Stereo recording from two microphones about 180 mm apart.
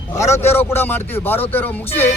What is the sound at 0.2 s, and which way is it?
Speech, 40° left (ahead or behind).